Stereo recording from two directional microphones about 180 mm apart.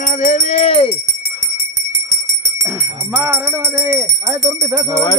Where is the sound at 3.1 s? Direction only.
15° right (ahead or behind).